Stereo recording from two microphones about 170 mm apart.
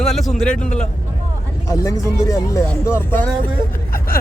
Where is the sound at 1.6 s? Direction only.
20° left (ahead or behind).